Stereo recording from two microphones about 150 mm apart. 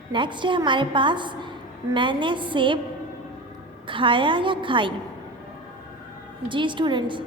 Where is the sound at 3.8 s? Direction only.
35° right (ahead or behind).